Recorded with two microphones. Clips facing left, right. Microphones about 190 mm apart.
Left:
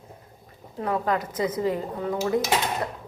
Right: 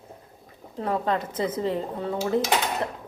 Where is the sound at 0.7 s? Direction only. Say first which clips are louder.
Even; 30° right (ahead or behind).